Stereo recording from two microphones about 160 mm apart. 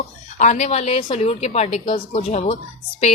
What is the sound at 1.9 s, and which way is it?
Speech, 30° left (ahead or behind).